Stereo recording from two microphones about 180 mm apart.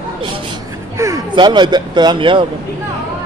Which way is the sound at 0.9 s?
15° right (ahead or behind).